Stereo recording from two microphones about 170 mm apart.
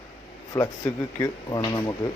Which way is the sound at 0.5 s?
15° left (ahead or behind).